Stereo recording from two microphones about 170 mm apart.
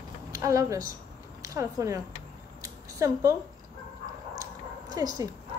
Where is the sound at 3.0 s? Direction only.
15° right (ahead or behind).